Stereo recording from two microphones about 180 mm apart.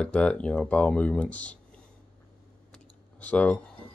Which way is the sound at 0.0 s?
5° left (ahead or behind).